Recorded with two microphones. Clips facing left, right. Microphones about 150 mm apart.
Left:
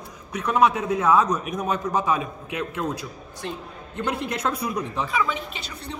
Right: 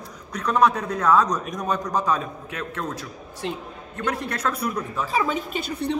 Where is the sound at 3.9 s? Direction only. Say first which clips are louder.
Even; 20° left (ahead or behind).